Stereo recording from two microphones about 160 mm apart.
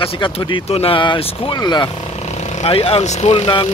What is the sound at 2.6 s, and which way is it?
Speech, 40° left (ahead or behind).